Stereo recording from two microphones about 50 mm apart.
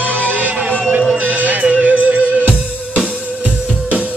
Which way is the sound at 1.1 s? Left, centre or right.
Right.